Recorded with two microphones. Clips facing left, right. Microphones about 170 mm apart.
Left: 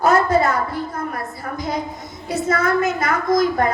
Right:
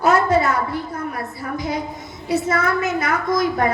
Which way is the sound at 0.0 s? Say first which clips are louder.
Left 1 dB; 50° left (ahead or behind).